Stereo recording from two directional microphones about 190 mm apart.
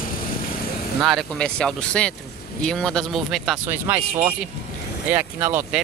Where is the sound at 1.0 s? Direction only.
Centre (ahead or behind).